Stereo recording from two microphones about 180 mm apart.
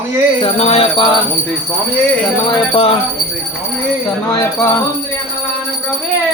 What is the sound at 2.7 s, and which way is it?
Music, 30° left (ahead or behind).